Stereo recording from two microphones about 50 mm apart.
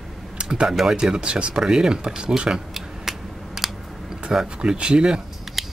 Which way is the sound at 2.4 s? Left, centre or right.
Centre.